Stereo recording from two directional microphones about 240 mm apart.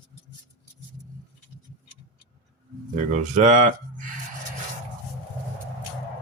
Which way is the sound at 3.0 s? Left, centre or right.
Right.